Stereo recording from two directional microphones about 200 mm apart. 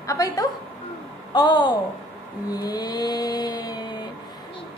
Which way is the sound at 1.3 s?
20° left (ahead or behind).